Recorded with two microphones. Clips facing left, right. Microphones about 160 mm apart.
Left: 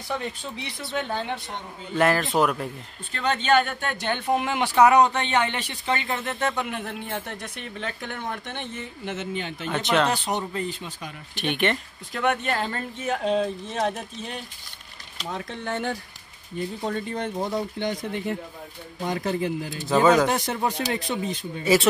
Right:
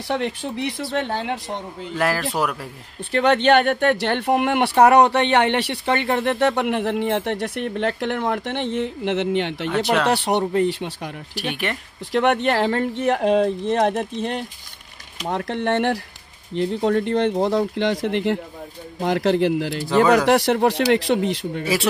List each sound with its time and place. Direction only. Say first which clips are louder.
0.1 s speech: right 7 dB; 70° right (ahead or behind)
0.9 s speech: right 2 dB; 80° right
2.0 s a man's voice: left 1 dB; centre (ahead or behind)
3.1 s speech: right 7 dB; 65° right (ahead or behind)
9.7 s a man's voice: right 1 dB; centre (ahead or behind)
10.0 s speech: right 6 dB; 70° right (ahead or behind)
11.3 s a man's voice: left 2 dB; 5° right (ahead or behind)
12.1 s speech: right 7 dB; 70° right (ahead or behind)